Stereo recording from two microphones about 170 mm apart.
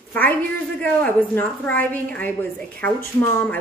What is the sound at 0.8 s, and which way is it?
A woman's voice, 10° left (ahead or behind).